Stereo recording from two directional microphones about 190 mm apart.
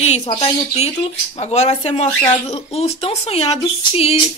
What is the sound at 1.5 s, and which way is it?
Speech, 35° left (ahead or behind).